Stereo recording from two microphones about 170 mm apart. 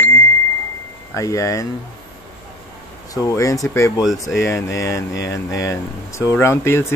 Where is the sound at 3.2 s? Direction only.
20° left (ahead or behind).